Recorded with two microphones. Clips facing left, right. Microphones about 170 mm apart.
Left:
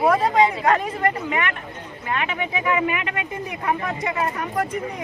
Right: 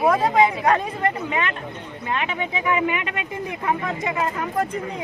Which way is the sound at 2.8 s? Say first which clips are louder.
Even; 20° right (ahead or behind).